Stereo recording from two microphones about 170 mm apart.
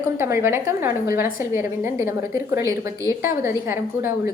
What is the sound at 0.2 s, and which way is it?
A woman's voice, 15° right (ahead or behind).